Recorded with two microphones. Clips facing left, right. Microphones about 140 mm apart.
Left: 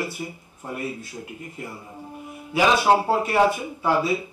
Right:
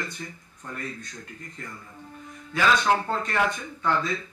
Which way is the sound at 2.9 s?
10° left (ahead or behind).